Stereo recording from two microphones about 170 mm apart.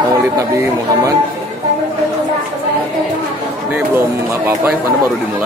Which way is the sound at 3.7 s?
15° right (ahead or behind).